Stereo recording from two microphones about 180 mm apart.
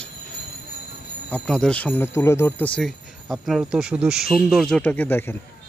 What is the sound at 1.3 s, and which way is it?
Speech, 5° left (ahead or behind).